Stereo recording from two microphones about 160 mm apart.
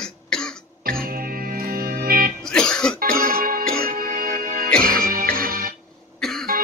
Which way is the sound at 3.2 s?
70° right (ahead or behind).